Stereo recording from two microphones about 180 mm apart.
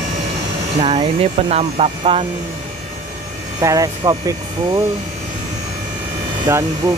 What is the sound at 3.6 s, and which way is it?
Speech, 20° right (ahead or behind).